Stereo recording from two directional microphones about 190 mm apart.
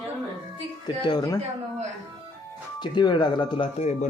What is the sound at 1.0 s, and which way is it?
Speech, 20° left (ahead or behind).